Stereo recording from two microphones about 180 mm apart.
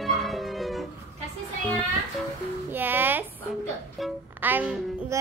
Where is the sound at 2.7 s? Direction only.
10° right (ahead or behind).